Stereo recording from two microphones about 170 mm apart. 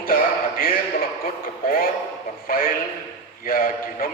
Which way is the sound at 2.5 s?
55° left (ahead or behind).